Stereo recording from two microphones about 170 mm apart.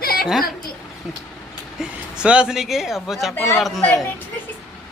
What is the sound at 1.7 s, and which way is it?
Speech, 5° right (ahead or behind).